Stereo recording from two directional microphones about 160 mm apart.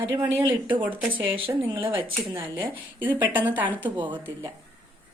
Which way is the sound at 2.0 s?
30° right (ahead or behind).